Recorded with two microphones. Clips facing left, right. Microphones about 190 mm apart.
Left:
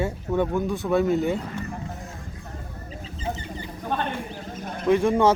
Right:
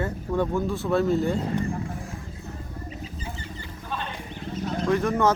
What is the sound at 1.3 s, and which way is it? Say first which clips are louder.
Speech: right 5 dB; 25° right (ahead or behind).